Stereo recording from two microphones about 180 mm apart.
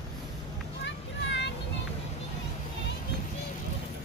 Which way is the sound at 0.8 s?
80° left.